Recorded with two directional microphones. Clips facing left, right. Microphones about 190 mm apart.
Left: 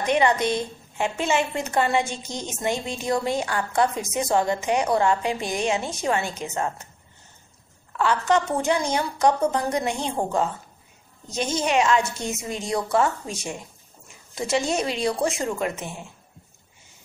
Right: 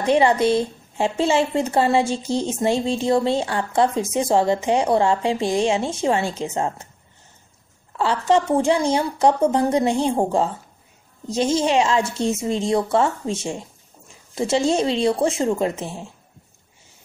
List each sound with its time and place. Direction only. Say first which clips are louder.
0.0 s speech: right 4 dB; 30° right (ahead or behind)
8.0 s speech: right 3 dB; 30° right (ahead or behind)